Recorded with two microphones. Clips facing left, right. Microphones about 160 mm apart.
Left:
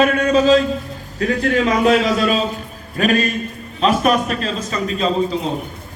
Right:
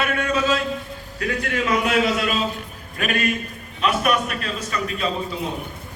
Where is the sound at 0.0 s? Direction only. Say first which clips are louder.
Left 8 dB; 35° left (ahead or behind).